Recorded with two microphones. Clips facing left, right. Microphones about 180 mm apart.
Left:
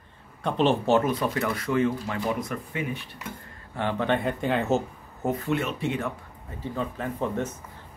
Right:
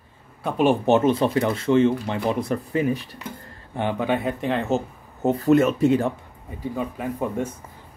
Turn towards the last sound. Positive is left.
turn(degrees=-10)  # may be behind; listen again after turning